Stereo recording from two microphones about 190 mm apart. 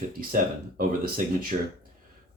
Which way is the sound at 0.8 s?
50° right (ahead or behind).